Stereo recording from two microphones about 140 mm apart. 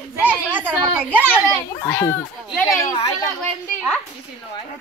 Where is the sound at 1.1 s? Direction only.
10° left (ahead or behind).